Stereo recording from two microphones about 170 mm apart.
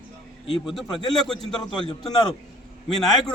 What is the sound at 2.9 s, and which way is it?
Speech, centre (ahead or behind).